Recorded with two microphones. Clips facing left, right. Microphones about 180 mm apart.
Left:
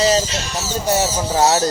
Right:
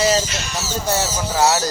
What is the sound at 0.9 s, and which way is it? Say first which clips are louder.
Speech: left 4 dB; 20° left (ahead or behind).